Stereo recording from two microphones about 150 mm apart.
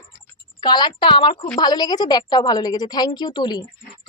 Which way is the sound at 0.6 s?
30° left (ahead or behind).